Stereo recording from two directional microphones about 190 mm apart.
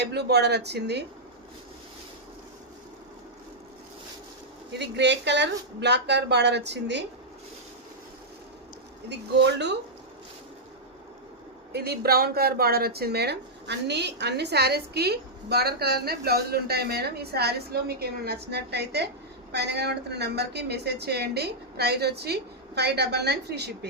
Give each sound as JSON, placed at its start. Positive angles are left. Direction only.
{"t": 0.0, "sound": "speech", "side_deg": -60}
{"t": 4.7, "sound": "speech", "side_deg": -65}
{"t": 9.0, "sound": "speech", "side_deg": -65}
{"t": 11.7, "sound": "speech", "side_deg": -60}